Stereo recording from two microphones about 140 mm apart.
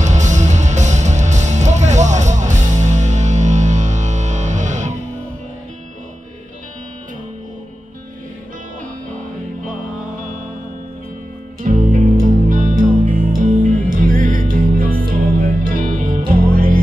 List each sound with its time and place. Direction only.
0.0 s music: 60° right (ahead or behind)
11.6 s music: 75° right (ahead or behind)